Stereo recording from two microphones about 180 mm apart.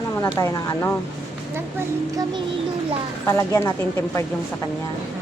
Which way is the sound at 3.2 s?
15° left (ahead or behind).